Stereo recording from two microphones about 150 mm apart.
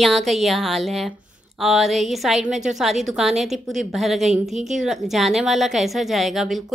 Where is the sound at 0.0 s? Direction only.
Centre (ahead or behind).